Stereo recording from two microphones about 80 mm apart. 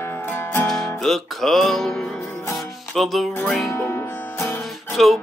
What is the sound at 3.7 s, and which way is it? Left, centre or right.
Music, left.